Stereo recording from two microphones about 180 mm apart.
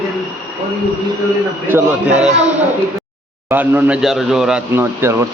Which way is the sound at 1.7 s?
10° right (ahead or behind).